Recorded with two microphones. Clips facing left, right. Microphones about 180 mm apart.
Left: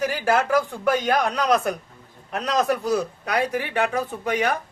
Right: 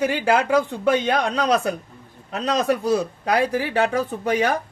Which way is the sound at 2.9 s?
30° right (ahead or behind).